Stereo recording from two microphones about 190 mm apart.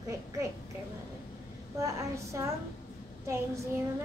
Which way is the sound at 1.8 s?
15° right (ahead or behind).